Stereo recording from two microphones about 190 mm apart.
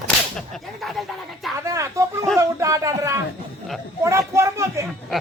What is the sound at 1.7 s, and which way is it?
Speech, 15° right (ahead or behind).